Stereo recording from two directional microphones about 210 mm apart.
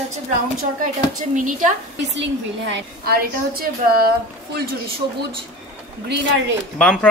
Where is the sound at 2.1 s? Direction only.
55° right (ahead or behind).